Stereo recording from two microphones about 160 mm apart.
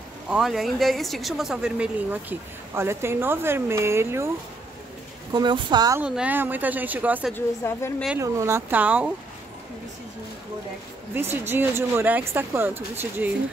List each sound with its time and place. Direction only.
0.3 s speech: centre (ahead or behind)
5.3 s speech: 30° right (ahead or behind)
5.9 s speech: 10° right (ahead or behind)
7.3 s a woman's voice: 15° left (ahead or behind)
8.2 s speech: 15° right (ahead or behind)
11.1 s speech: 15° right (ahead or behind)